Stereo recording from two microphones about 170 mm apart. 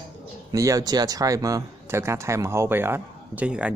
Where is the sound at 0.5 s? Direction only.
20° right (ahead or behind).